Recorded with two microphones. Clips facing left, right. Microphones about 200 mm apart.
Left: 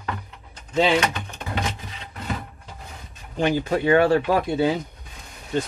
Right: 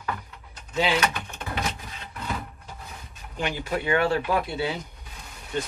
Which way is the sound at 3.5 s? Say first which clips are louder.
Left 7 dB; 40° left (ahead or behind).